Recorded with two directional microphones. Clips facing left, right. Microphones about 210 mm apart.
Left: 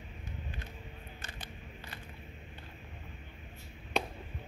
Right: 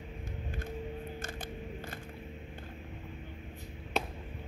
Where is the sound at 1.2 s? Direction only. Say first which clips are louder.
Right 8 dB; 50° right (ahead or behind).